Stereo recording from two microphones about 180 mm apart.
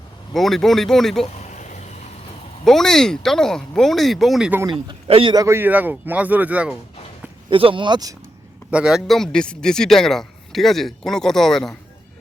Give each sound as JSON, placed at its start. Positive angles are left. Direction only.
{"t": 0.3, "sound": "speech", "side_deg": 0}
{"t": 1.5, "sound": "vehicle", "side_deg": 45}
{"t": 2.6, "sound": "speech", "side_deg": 0}
{"t": 4.9, "sound": "a man's voice", "side_deg": -30}
{"t": 7.5, "sound": "speech", "side_deg": -30}
{"t": 8.7, "sound": "speech", "side_deg": -5}